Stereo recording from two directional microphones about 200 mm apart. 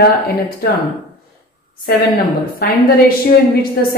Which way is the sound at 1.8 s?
50° left (ahead or behind).